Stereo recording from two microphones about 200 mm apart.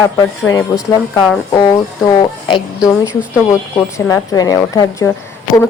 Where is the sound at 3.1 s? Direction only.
5° right (ahead or behind).